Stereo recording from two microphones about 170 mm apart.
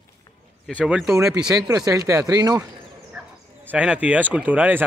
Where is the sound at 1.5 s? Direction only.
20° right (ahead or behind).